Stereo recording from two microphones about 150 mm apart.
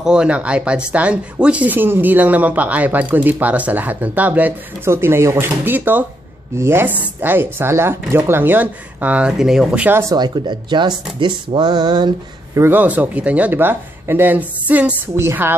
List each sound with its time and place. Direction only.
0.0 s speech: 5° right (ahead or behind)
10.1 s speech: 30° right (ahead or behind)
12.5 s speech: 15° right (ahead or behind)